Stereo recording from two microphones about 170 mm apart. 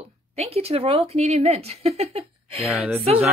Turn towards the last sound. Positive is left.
turn(degrees=-5)  # may be behind; listen again after turning